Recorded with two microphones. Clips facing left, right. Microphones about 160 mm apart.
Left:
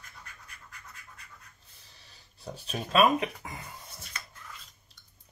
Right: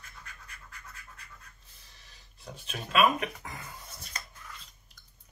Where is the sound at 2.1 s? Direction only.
35° left (ahead or behind).